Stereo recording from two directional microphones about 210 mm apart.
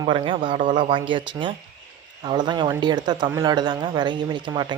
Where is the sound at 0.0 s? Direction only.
25° right (ahead or behind).